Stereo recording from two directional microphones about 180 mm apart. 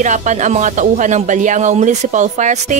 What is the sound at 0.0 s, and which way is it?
Speech, 40° right (ahead or behind).